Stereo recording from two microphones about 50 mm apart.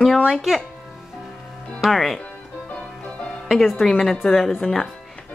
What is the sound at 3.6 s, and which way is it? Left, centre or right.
A woman's voice, centre.